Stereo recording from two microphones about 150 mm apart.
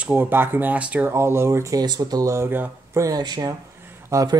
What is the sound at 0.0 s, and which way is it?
Speech, 15° right (ahead or behind).